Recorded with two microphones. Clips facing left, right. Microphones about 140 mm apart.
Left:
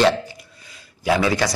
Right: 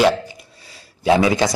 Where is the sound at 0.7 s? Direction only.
25° right (ahead or behind).